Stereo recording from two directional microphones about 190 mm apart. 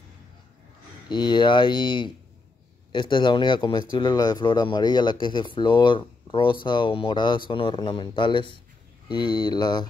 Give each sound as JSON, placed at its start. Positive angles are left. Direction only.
{"t": 1.0, "sound": "speech", "side_deg": 25}